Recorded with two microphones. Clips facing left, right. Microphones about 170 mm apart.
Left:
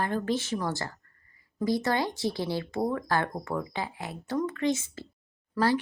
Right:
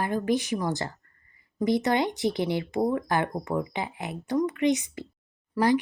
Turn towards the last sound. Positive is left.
turn(degrees=-15)  # may be behind; listen again after turning